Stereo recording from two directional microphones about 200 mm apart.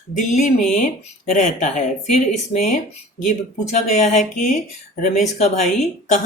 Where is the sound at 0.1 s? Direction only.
40° left (ahead or behind).